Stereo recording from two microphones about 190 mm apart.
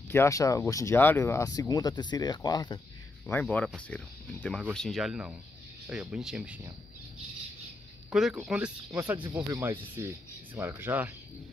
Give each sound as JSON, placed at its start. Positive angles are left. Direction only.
{"t": 0.1, "sound": "speech", "side_deg": 15}
{"t": 3.3, "sound": "speech", "side_deg": 10}
{"t": 8.1, "sound": "speech", "side_deg": 0}